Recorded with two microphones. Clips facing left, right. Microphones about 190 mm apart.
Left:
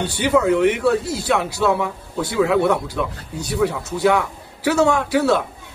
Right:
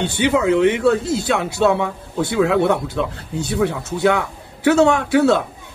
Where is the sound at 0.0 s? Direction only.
20° right (ahead or behind).